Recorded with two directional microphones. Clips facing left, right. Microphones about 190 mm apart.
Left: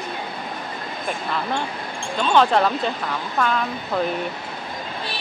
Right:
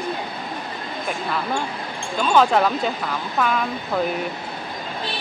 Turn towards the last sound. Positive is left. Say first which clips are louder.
# right 1 dB
turn(degrees=-5)  # may be behind; listen again after turning